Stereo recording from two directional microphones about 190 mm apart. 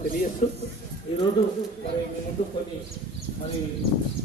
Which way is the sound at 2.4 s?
30° left (ahead or behind).